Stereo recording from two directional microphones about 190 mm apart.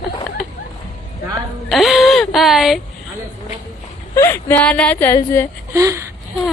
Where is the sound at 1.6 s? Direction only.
Centre (ahead or behind).